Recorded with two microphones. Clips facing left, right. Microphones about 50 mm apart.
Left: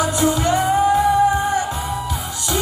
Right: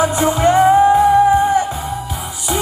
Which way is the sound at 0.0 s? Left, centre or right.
Right.